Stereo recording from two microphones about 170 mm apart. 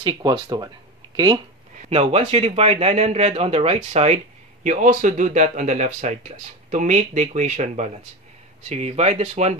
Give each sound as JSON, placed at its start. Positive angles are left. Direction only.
{"t": 0.0, "sound": "speech", "side_deg": -25}
{"t": 1.9, "sound": "speech", "side_deg": -35}